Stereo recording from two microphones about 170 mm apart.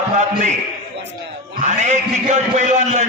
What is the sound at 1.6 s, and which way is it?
A man's voice, 45° right (ahead or behind).